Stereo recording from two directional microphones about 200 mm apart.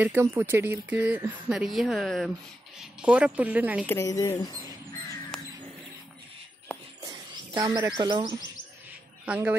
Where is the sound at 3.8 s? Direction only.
15° left (ahead or behind).